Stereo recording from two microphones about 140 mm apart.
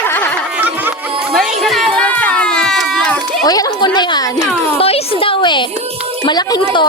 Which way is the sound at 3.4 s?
25° left (ahead or behind).